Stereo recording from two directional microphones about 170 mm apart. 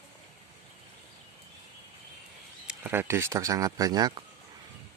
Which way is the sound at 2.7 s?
10° right (ahead or behind).